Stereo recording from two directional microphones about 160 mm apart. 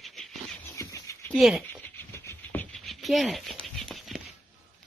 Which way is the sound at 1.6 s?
15° left (ahead or behind).